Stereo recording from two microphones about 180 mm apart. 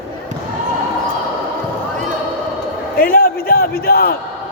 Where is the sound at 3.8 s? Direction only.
55° left (ahead or behind).